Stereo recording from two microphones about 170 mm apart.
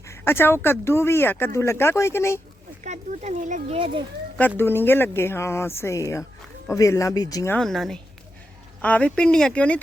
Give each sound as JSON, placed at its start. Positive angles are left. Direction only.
{"t": 0.0, "sound": "speech", "side_deg": 15}
{"t": 2.8, "sound": "speech", "side_deg": -45}
{"t": 3.8, "sound": "a child's voice", "side_deg": -30}
{"t": 4.4, "sound": "speech", "side_deg": 10}
{"t": 7.5, "sound": "a woman's voice", "side_deg": 0}